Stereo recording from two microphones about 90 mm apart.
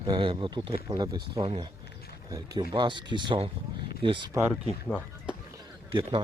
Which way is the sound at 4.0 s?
75° right (ahead or behind).